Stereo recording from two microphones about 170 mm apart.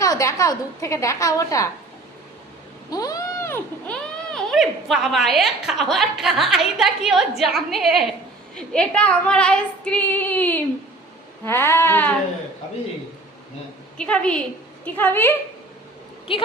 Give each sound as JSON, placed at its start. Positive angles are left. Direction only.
{"t": 0.0, "sound": "a woman's voice", "side_deg": 20}
{"t": 2.9, "sound": "a sound", "side_deg": 20}
{"t": 4.4, "sound": "a woman's voice", "side_deg": 0}
{"t": 14.0, "sound": "a woman's voice", "side_deg": 5}